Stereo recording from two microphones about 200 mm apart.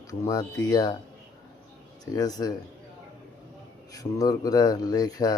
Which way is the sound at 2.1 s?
20° left (ahead or behind).